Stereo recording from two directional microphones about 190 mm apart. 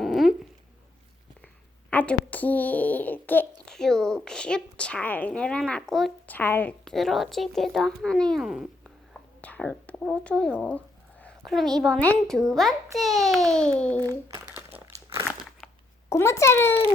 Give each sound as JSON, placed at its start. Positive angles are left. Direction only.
{"t": 0.0, "sound": "a sound", "side_deg": 0}
{"t": 1.9, "sound": "a child's voice", "side_deg": 10}
{"t": 14.1, "sound": "speech", "side_deg": -20}
{"t": 14.4, "sound": "crumpling", "side_deg": -10}
{"t": 16.0, "sound": "a child's voice", "side_deg": 15}